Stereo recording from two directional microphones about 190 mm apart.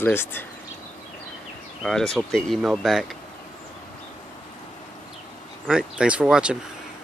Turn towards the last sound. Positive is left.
turn(degrees=-5)  # may be behind; listen again after turning